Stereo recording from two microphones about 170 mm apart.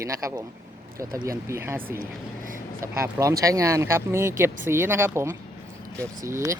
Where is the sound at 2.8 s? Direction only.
15° right (ahead or behind).